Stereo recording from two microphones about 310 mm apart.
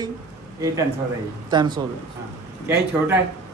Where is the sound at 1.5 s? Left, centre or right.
Centre.